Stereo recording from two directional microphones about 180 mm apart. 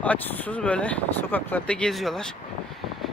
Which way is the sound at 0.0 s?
10° left (ahead or behind).